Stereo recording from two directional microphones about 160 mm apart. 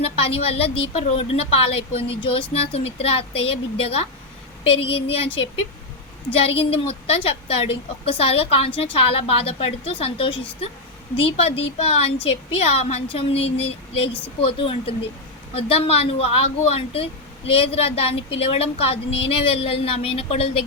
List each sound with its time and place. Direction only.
0.0 s a woman's voice: 35° left (ahead or behind)